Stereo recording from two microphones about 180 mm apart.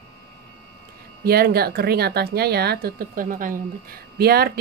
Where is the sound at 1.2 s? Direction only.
60° right (ahead or behind).